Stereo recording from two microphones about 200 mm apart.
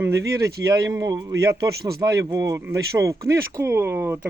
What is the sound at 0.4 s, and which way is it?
Speech, 15° right (ahead or behind).